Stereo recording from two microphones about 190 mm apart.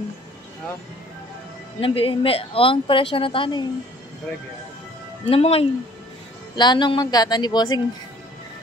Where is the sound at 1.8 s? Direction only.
30° left (ahead or behind).